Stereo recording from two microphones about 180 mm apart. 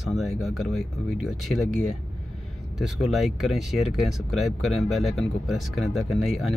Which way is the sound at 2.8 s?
Centre (ahead or behind).